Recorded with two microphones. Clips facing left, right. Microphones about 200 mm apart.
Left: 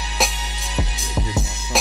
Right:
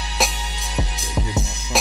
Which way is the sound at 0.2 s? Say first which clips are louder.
Even; centre (ahead or behind).